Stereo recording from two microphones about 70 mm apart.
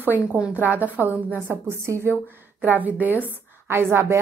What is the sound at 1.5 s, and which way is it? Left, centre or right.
Speech, right.